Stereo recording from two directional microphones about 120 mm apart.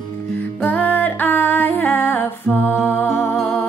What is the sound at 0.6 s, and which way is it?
Music, 15° left (ahead or behind).